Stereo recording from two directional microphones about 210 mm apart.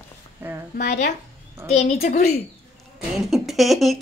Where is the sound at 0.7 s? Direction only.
35° left (ahead or behind).